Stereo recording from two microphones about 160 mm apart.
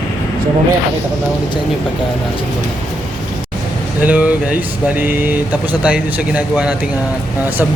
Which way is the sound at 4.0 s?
10° right (ahead or behind).